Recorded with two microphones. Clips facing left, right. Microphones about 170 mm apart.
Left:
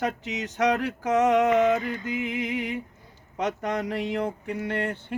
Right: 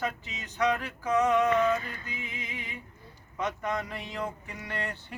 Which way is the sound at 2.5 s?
90° left.